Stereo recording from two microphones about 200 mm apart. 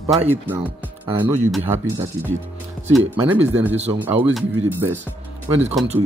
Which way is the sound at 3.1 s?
10° right (ahead or behind).